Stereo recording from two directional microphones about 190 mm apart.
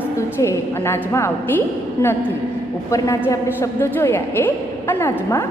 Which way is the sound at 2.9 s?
15° left (ahead or behind).